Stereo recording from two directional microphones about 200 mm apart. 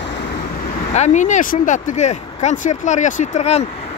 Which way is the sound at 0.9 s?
35° left (ahead or behind).